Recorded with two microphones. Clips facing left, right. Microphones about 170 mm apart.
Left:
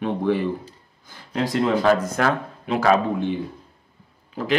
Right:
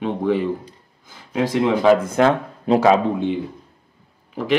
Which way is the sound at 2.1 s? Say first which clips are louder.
Right 5 dB; 25° right (ahead or behind).